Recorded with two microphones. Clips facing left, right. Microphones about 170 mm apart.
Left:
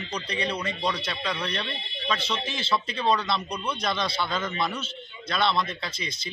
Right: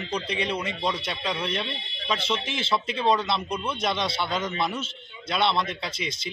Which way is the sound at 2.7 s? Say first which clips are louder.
Right 1 dB; 25° right (ahead or behind).